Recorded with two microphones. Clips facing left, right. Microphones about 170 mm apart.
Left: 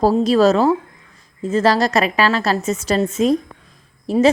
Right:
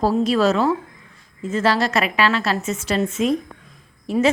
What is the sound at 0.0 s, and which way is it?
A woman's voice, 40° left (ahead or behind).